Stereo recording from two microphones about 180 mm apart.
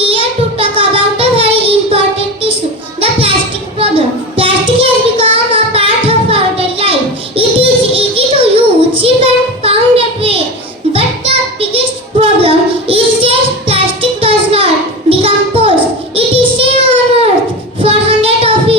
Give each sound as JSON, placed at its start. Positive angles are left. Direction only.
{"t": 0.0, "sound": "child singing", "side_deg": -30}
{"t": 3.0, "sound": "a sound", "side_deg": -30}
{"t": 3.8, "sound": "child singing", "side_deg": -30}
{"t": 10.9, "sound": "music", "side_deg": -30}
{"t": 12.2, "sound": "child singing", "side_deg": -30}
{"t": 15.2, "sound": "a sound", "side_deg": -30}
{"t": 16.1, "sound": "child singing", "side_deg": -30}